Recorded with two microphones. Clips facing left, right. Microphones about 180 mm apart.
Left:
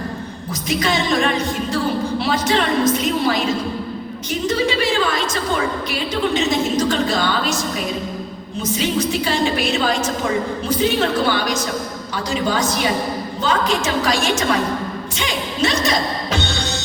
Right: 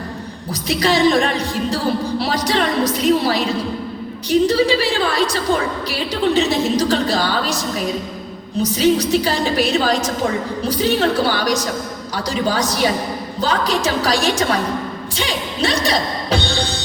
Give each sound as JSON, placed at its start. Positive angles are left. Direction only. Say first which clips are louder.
{"t": 0.7, "sound": "speech", "louder": "right 4 dB", "side_deg": -35}
{"t": 8.6, "sound": "speech", "louder": "right 4 dB", "side_deg": -35}